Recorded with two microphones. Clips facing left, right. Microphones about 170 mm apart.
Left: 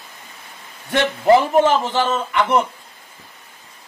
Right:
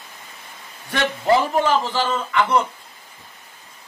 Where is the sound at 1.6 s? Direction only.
20° left (ahead or behind).